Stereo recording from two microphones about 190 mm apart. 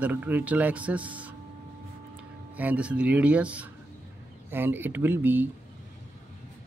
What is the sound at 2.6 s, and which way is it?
A man's voice, 5° right (ahead or behind).